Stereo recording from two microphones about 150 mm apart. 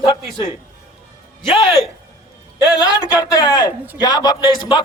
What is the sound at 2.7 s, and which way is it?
Speech, 25° left (ahead or behind).